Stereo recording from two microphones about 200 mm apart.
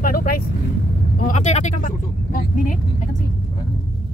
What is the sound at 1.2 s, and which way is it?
Speech, 35° left (ahead or behind).